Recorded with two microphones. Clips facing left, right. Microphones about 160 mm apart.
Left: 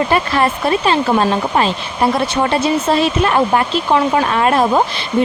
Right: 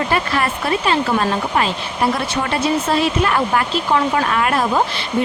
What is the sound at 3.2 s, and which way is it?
Speech, 25° left (ahead or behind).